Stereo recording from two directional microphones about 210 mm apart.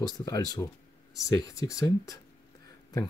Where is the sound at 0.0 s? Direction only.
20° left (ahead or behind).